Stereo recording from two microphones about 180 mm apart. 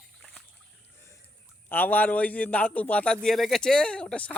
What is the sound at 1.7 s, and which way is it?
A man's voice, 10° left (ahead or behind).